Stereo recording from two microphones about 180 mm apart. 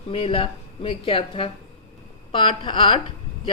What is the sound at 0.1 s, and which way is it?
A woman's voice, 30° left (ahead or behind).